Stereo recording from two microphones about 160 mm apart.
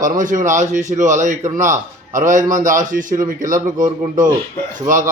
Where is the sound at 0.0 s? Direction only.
55° right (ahead or behind).